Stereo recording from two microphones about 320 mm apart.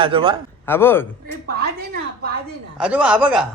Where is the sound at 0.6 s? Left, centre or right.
Centre.